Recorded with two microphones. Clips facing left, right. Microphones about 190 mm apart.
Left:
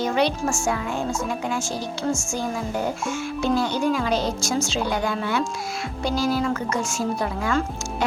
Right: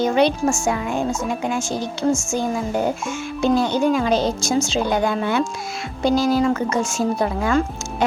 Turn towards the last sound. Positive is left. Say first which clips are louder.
# right 4 dB
turn(degrees=-20)  # may be behind; listen again after turning